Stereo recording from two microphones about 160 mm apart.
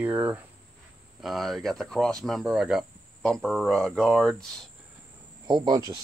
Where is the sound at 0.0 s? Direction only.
10° right (ahead or behind).